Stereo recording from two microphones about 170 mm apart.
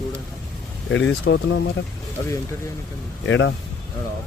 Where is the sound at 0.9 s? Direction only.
90° left.